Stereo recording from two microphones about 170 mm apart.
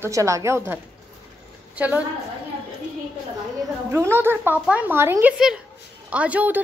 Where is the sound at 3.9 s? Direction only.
15° right (ahead or behind).